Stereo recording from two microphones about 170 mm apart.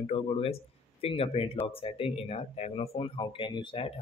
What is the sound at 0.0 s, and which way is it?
Speech, 35° left (ahead or behind).